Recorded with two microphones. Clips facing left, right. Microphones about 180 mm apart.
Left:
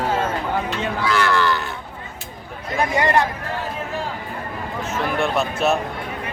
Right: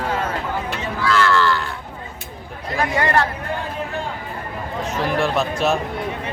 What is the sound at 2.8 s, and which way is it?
Speech, 20° left (ahead or behind).